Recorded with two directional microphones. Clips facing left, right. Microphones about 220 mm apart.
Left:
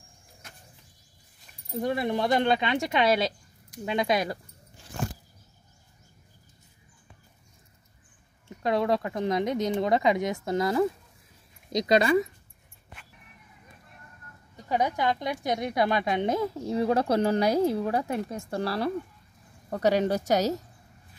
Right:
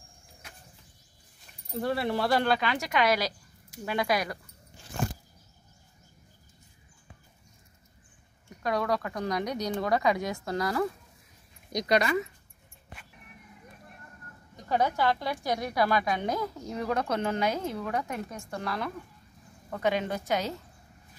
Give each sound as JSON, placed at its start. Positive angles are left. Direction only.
{"t": 1.8, "sound": "speech", "side_deg": 15}
{"t": 8.5, "sound": "speech", "side_deg": 25}
{"t": 14.7, "sound": "a woman's voice", "side_deg": 15}